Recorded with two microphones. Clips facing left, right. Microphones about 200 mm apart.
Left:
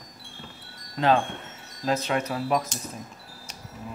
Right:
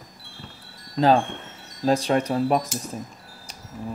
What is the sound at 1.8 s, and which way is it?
Speech, 35° right (ahead or behind).